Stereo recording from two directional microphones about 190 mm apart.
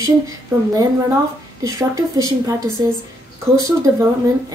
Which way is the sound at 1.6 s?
20° right (ahead or behind).